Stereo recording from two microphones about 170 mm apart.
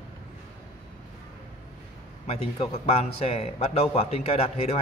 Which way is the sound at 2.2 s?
35° left (ahead or behind).